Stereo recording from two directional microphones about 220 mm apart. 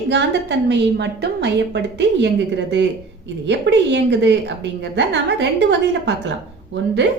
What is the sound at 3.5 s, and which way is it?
A woman's voice, 50° right (ahead or behind).